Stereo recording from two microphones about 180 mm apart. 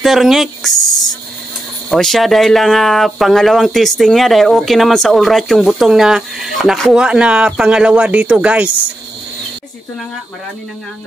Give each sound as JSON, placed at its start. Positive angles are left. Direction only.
{"t": 0.0, "sound": "speech", "side_deg": 0}
{"t": 1.9, "sound": "speech", "side_deg": 0}